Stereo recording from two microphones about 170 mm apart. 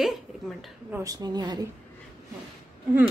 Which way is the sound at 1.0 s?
25° right (ahead or behind).